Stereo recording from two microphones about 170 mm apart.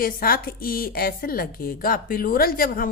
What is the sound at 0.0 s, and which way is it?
A woman's voice, 60° left (ahead or behind).